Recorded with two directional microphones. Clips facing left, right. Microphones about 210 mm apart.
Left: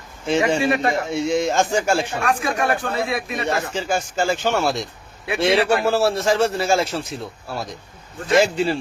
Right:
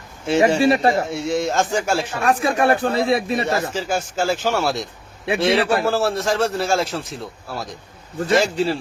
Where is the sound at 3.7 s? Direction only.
5° right (ahead or behind).